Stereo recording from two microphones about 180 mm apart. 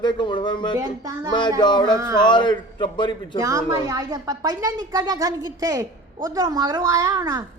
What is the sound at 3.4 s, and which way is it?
Speech, 20° right (ahead or behind).